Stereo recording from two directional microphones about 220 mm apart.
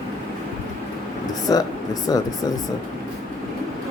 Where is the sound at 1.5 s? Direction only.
15° left (ahead or behind).